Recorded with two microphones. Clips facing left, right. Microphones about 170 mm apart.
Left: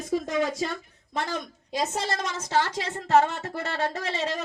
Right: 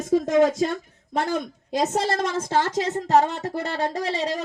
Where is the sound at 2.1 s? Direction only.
55° right (ahead or behind).